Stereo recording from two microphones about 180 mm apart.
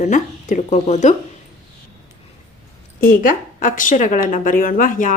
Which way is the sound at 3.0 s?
50° left (ahead or behind).